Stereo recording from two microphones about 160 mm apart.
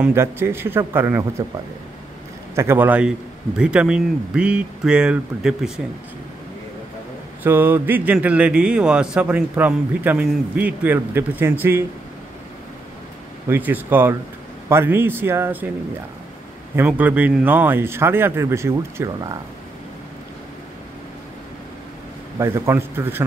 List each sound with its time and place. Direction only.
0.0 s speech: 15° right (ahead or behind)
2.5 s speech: 15° right (ahead or behind)
7.4 s speech: 15° right (ahead or behind)
13.5 s speech: 10° right (ahead or behind)
16.7 s speech: 10° right (ahead or behind)
22.4 s speech: 15° right (ahead or behind)